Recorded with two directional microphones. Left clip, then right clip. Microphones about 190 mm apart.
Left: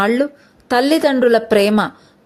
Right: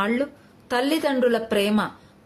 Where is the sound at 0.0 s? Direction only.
40° left (ahead or behind).